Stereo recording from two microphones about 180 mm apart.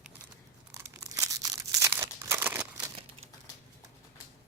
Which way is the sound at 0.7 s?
20° right (ahead or behind).